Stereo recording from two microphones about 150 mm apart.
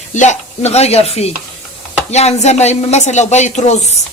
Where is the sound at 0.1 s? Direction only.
55° left (ahead or behind).